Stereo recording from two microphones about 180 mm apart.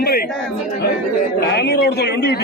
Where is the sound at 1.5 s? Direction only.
70° left (ahead or behind).